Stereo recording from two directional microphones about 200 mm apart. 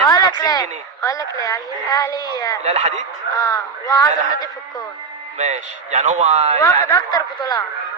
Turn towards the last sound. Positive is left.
turn(degrees=20)  # may be behind; listen again after turning